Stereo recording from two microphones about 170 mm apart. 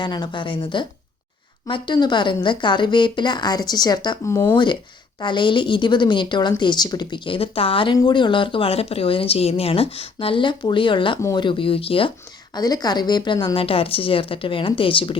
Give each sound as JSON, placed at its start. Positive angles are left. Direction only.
{"t": 0.0, "sound": "a woman's voice", "side_deg": 25}
{"t": 11.2, "sound": "speech", "side_deg": 15}
{"t": 11.4, "sound": "speech", "side_deg": 30}